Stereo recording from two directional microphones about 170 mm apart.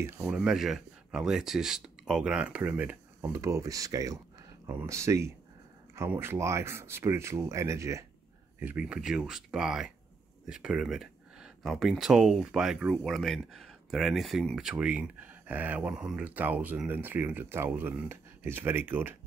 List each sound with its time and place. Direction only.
0.3 s speech: 5° right (ahead or behind)